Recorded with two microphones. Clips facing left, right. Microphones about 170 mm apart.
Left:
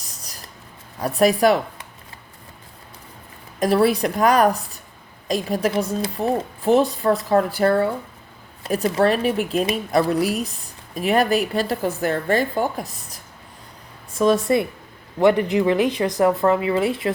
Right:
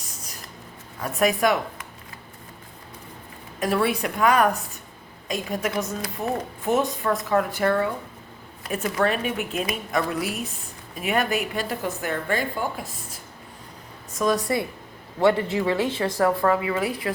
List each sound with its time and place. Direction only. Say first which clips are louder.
0.0 s a sound: right 1 dB; 35° left (ahead or behind)
0.9 s speech: left 5 dB; 35° left (ahead or behind)
3.6 s a woman's voice: left 6 dB; 35° left (ahead or behind)
14.1 s speech: left 5 dB; 30° left (ahead or behind)